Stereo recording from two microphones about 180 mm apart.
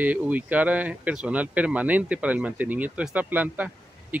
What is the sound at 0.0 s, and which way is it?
Speech, 10° right (ahead or behind).